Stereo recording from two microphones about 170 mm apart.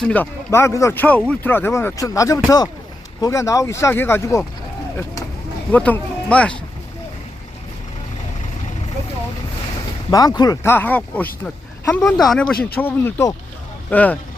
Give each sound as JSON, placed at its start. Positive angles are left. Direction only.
{"t": 0.0, "sound": "speech", "side_deg": 10}
{"t": 5.7, "sound": "speech", "side_deg": 10}
{"t": 10.1, "sound": "speech", "side_deg": 20}